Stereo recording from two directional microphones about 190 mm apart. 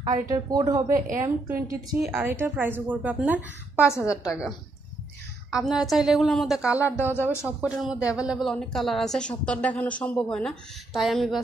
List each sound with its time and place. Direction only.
0.0 s a woman's voice: 20° right (ahead or behind); by 11.4 s centre (ahead or behind)